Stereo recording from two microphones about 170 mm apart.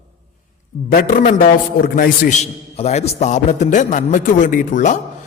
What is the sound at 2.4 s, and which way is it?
A man's voice, 40° left (ahead or behind).